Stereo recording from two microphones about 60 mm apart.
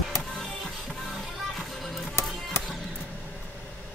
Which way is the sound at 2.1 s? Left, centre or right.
Left.